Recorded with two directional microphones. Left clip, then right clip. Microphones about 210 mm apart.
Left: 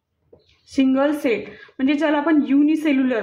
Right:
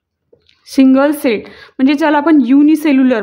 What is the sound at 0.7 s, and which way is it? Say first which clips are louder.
A woman's voice: right 8 dB; 40° right (ahead or behind).